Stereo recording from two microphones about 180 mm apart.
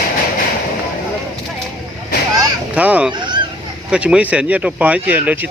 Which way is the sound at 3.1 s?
25° right (ahead or behind).